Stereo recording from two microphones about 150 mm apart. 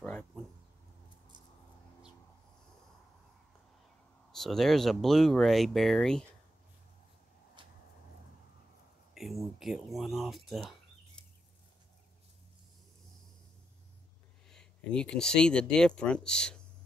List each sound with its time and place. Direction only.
4.3 s speech: centre (ahead or behind)
7.6 s a sound: 30° right (ahead or behind)
9.1 s bird: centre (ahead or behind)
14.5 s speech: 5° left (ahead or behind)